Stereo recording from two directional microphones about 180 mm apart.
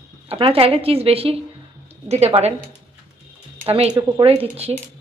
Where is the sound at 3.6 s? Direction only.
30° right (ahead or behind).